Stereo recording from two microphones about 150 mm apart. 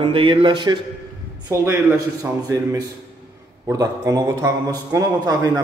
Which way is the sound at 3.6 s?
25° right (ahead or behind).